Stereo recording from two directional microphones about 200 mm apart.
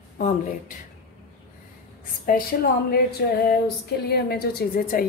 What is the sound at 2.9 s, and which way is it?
A woman's voice, 50° left (ahead or behind).